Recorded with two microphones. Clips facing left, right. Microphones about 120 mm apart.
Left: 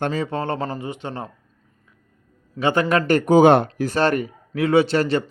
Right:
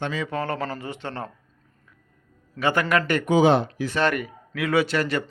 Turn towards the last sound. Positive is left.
turn(degrees=30)  # may be behind; listen again after turning